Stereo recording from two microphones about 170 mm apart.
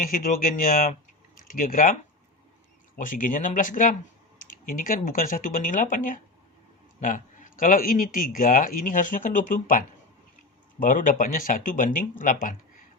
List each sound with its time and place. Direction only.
0.0 s a man's voice: 55° left (ahead or behind)